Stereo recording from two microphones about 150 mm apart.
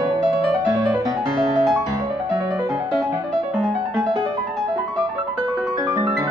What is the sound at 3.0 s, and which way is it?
Music, centre (ahead or behind).